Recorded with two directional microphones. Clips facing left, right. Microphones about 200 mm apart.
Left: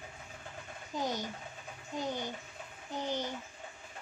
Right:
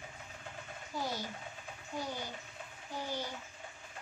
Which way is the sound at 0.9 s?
20° left (ahead or behind).